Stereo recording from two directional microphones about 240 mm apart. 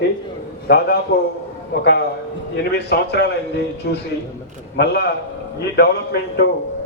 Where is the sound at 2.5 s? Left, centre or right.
Left.